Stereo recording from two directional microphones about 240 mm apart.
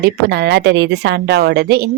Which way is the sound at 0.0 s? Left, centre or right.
Right.